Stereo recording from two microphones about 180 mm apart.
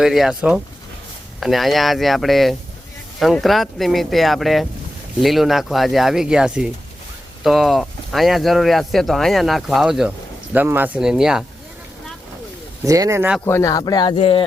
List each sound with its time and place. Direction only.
0.0 s speech: 5° right (ahead or behind)
12.8 s speech: 20° right (ahead or behind)
13.4 s speech: 15° left (ahead or behind)
14.2 s speech: 35° left (ahead or behind)